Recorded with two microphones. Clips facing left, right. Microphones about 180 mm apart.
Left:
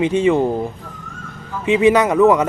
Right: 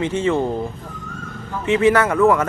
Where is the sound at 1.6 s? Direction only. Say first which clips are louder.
Left 2 dB; 15° left (ahead or behind).